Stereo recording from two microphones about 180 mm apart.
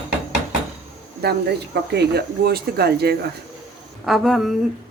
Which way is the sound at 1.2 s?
65° right (ahead or behind).